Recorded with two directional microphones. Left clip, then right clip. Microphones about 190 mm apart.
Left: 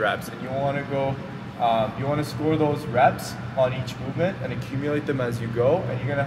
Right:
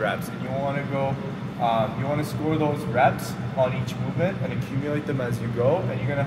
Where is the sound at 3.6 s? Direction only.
10° left (ahead or behind).